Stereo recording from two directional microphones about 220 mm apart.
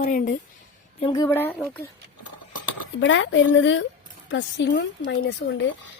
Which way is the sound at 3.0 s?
55° left (ahead or behind).